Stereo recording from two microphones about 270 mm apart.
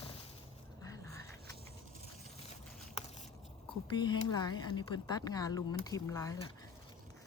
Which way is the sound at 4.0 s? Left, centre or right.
Centre.